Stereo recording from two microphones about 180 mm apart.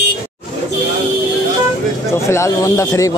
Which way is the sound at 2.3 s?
15° left (ahead or behind).